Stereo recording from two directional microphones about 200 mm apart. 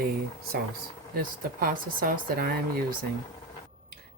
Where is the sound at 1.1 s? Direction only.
45° right (ahead or behind).